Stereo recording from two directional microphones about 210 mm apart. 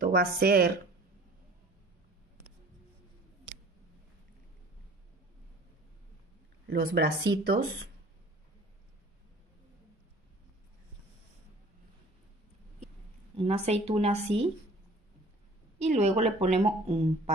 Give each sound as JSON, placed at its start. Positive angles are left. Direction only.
{"t": 0.0, "sound": "speech", "side_deg": -45}
{"t": 6.7, "sound": "speech", "side_deg": -50}
{"t": 13.4, "sound": "a woman's voice", "side_deg": -30}
{"t": 15.8, "sound": "a woman's voice", "side_deg": -30}